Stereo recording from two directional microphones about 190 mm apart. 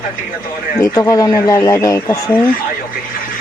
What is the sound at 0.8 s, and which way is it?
Speech, 20° left (ahead or behind).